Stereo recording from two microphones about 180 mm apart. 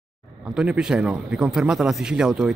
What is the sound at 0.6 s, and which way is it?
A man's voice, 5° right (ahead or behind).